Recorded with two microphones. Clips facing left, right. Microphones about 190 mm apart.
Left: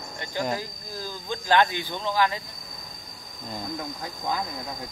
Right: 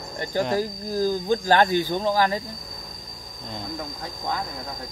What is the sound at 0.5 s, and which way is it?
Speech, 40° right (ahead or behind).